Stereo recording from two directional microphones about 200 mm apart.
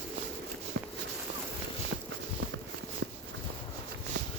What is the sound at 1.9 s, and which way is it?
Clip-clop, 70° right (ahead or behind).